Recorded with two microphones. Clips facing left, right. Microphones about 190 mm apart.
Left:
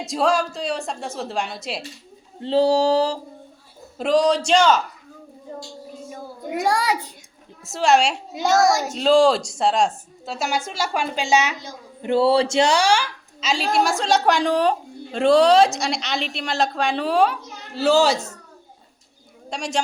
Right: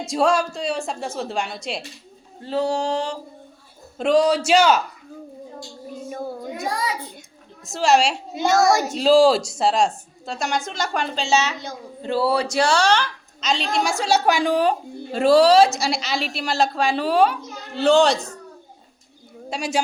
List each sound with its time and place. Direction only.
0.0 s a woman's voice: centre (ahead or behind)
2.4 s a sound: 30° left (ahead or behind)
3.9 s a woman's voice: centre (ahead or behind)
6.5 s a child's voice: 70° left (ahead or behind)
7.6 s a woman's voice: centre (ahead or behind)
12.0 s a woman's voice: 25° left (ahead or behind); by 13.9 s 5° left (ahead or behind)
14.0 s a woman's voice: 5° right (ahead or behind)
19.5 s a woman's voice: 5° right (ahead or behind)